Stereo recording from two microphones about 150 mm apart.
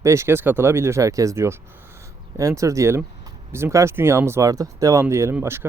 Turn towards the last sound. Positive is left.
turn(degrees=-15)  # may be behind; listen again after turning